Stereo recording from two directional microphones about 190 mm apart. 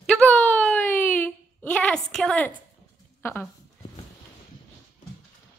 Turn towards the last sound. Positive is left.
turn(degrees=10)  # may be behind; listen again after turning